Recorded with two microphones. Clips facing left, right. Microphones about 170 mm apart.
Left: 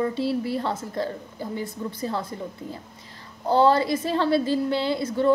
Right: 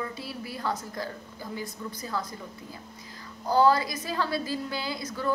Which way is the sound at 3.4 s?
25° left (ahead or behind).